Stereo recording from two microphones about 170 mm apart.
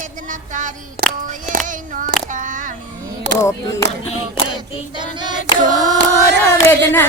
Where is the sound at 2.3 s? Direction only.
50° right (ahead or behind).